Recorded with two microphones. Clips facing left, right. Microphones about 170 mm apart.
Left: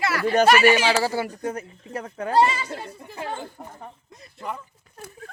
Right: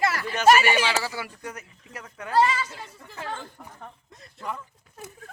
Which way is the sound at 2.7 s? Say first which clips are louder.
Left 8 dB; 60° left (ahead or behind).